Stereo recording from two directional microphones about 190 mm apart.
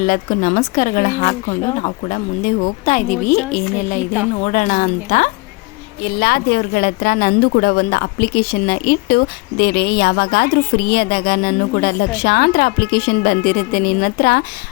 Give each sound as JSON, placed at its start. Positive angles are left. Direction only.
{"t": 0.0, "sound": "a woman's voice", "side_deg": 45}
{"t": 6.1, "sound": "speech", "side_deg": 55}